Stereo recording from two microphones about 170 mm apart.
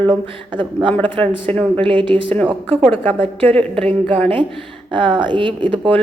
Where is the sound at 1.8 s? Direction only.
30° right (ahead or behind).